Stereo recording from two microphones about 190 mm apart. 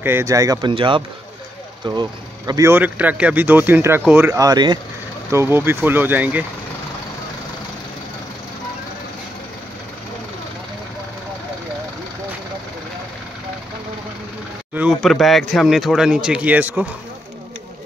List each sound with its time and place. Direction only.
0.0 s speech: 15° right (ahead or behind)
14.7 s speech: 5° right (ahead or behind)